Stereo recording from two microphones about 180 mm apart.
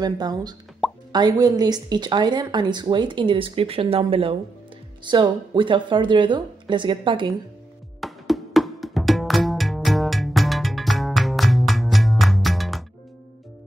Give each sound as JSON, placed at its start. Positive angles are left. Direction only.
{"t": 0.0, "sound": "a woman's voice", "side_deg": -20}
{"t": 8.0, "sound": "music", "side_deg": 0}